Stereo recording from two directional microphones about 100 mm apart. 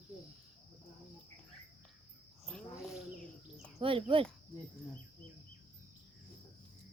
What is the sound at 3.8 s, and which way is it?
Speech, 65° right (ahead or behind).